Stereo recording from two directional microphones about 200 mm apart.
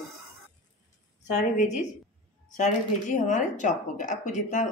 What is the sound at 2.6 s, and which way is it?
A woman's voice, 40° left (ahead or behind).